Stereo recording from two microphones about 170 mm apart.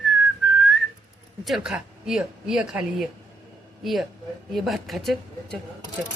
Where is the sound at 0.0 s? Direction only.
Centre (ahead or behind).